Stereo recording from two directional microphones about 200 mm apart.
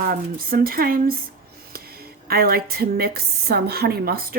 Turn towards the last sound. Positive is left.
turn(degrees=-50)  # may be behind; listen again after turning